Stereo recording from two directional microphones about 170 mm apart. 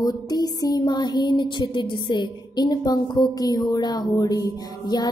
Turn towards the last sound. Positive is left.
turn(degrees=25)  # may be behind; listen again after turning